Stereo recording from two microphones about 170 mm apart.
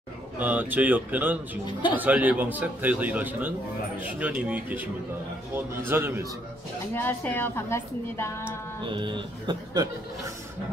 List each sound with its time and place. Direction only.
0.4 s a man's voice: 10° right (ahead or behind)
5.9 s a man's voice: 15° right (ahead or behind)
6.9 s a woman's voice: 10° left (ahead or behind)
8.8 s a man's voice: 30° right (ahead or behind)